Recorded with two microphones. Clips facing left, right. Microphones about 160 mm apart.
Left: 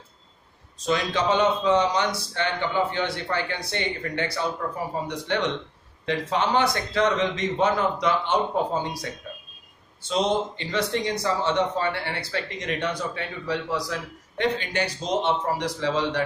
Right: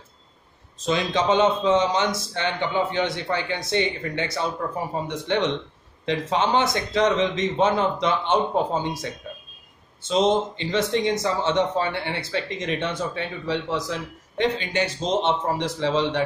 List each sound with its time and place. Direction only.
0.8 s speech: 20° right (ahead or behind)